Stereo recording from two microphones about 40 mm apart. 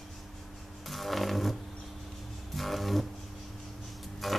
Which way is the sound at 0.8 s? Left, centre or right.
Centre.